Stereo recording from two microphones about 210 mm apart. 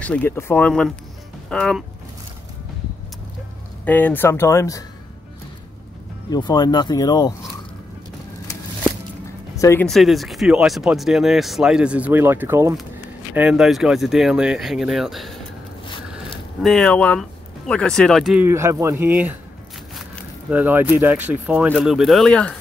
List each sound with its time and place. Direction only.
0.0 s speech: 5° left (ahead or behind)
3.8 s speech: 10° left (ahead or behind)
6.3 s speech: 20° left (ahead or behind)
9.6 s speech: 15° left (ahead or behind)
9.8 s speech: centre (ahead or behind)
16.6 s speech: 5° left (ahead or behind)
18.4 s speech: 10° right (ahead or behind)
20.4 s speech: 10° right (ahead or behind)